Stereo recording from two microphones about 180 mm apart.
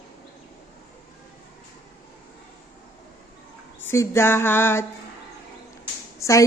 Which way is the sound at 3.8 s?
15° left (ahead or behind).